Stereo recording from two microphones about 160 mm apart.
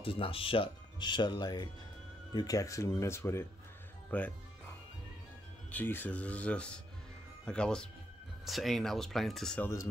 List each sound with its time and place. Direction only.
0.0 s speech: 35° left (ahead or behind); by 4.3 s 10° left (ahead or behind)
5.7 s speech: 10° left (ahead or behind)